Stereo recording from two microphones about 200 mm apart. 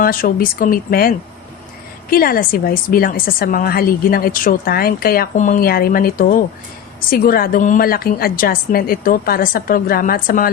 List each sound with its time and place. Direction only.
0.0 s a woman's voice: 45° left (ahead or behind)